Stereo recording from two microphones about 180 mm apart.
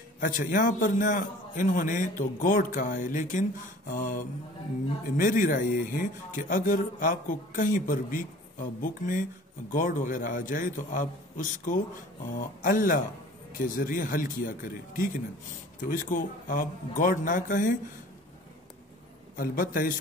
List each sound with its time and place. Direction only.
0.5 s speech: 50° left (ahead or behind)
16.1 s speech: 50° left (ahead or behind)
19.3 s speech: 50° left (ahead or behind)